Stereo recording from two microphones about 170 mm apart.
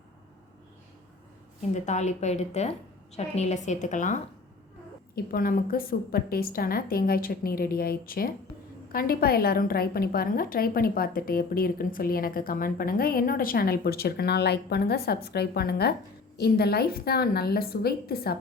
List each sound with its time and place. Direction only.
1.7 s a woman's voice: 45° left (ahead or behind)
5.1 s a woman's voice: 60° left (ahead or behind)